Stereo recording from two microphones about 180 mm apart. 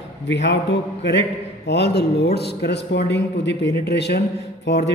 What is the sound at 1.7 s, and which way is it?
Speech, 65° left (ahead or behind).